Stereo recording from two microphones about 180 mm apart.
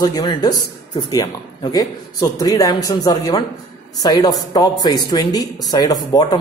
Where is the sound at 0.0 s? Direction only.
20° left (ahead or behind).